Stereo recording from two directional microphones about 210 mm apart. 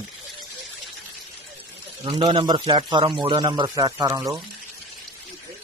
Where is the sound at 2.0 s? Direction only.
25° right (ahead or behind).